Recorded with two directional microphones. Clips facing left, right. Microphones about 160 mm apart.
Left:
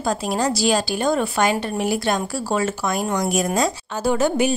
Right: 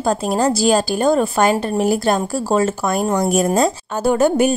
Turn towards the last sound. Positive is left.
turn(degrees=-50)  # may be behind; listen again after turning